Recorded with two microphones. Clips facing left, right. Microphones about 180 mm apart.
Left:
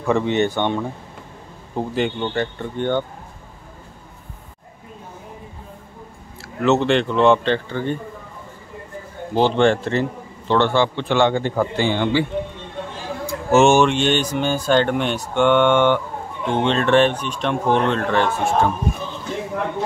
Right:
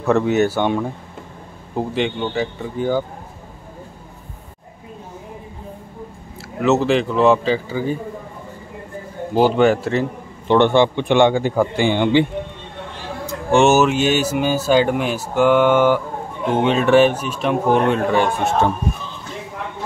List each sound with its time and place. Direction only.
0.0 s speech: 5° right (ahead or behind)
6.6 s speech: centre (ahead or behind)
9.3 s speech: 5° right (ahead or behind)
10.5 s speech: 20° right (ahead or behind)
13.3 s speech: centre (ahead or behind)